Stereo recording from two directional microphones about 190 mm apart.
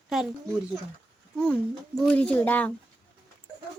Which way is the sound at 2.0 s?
5° left (ahead or behind).